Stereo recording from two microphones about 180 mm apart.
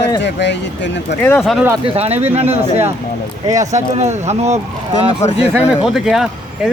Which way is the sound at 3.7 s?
40° right (ahead or behind).